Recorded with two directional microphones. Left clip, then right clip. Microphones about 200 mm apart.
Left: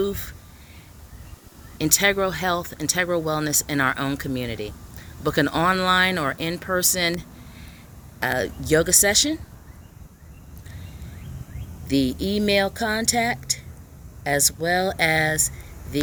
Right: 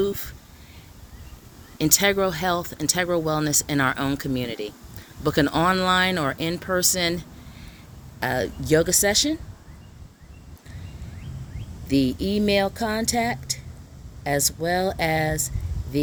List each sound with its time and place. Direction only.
0.0 s speech: 25° right (ahead or behind)
1.8 s speech: 30° right (ahead or behind)
11.9 s speech: 15° right (ahead or behind)